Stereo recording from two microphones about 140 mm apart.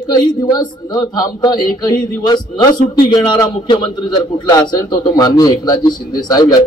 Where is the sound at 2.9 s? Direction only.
30° left (ahead or behind).